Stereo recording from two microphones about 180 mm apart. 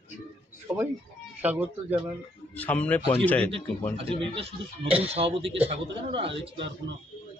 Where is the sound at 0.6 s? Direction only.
10° right (ahead or behind).